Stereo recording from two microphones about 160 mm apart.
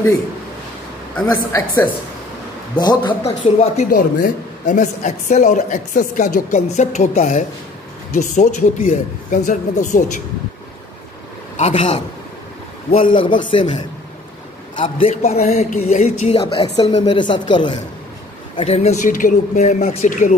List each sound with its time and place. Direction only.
1.2 s speech: 25° left (ahead or behind)
2.8 s a man's voice: 30° left (ahead or behind)
3.7 s a woman's voice: 55° left (ahead or behind)
11.5 s a woman's voice: 45° left (ahead or behind)
12.9 s a man's voice: 60° left (ahead or behind)
13.4 s speech: 30° left (ahead or behind)
14.8 s a man's voice: 35° left (ahead or behind)
17.0 s speech: 30° left (ahead or behind)
18.6 s a woman's voice: 40° left (ahead or behind)